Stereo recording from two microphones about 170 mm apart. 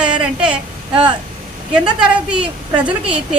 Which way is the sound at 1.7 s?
5° right (ahead or behind).